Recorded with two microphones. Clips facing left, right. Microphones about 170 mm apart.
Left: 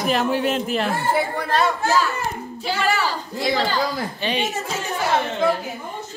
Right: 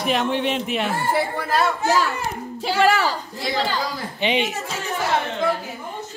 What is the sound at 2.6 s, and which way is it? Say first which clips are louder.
Speech: right 4 dB; 80° right.